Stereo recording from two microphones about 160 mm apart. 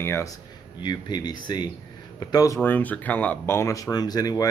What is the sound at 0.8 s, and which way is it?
Speech, 25° left (ahead or behind).